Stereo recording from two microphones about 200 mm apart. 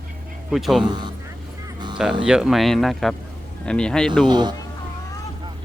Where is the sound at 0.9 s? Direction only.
20° right (ahead or behind).